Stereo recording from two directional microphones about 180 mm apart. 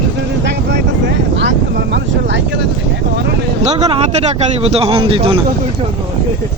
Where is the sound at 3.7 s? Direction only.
30° right (ahead or behind).